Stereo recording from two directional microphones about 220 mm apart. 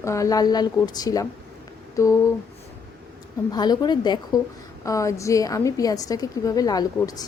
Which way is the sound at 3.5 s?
20° left (ahead or behind).